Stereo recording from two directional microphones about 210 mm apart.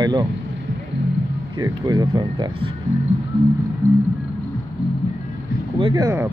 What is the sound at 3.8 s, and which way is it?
Music, 10° right (ahead or behind).